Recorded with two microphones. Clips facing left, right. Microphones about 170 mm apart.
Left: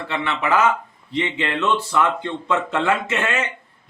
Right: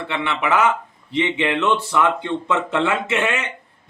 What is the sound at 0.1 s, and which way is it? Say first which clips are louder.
Speech: even; 20° right (ahead or behind).